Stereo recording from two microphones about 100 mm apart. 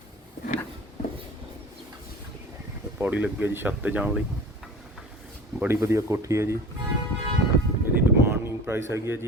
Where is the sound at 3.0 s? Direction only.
15° right (ahead or behind).